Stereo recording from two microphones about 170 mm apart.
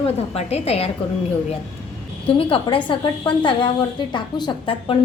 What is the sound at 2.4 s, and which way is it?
A woman's voice, 30° left (ahead or behind).